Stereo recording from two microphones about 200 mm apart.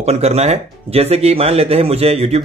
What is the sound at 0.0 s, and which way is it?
Speech, 30° right (ahead or behind).